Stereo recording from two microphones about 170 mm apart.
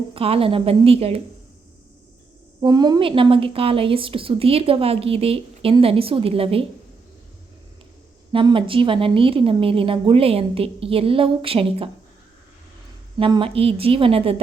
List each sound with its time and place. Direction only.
0.1 s a woman's voice: 35° right (ahead or behind)
2.6 s a woman's voice: 25° right (ahead or behind)
8.3 s a woman's voice: 30° right (ahead or behind)
13.1 s a woman's voice: 30° right (ahead or behind)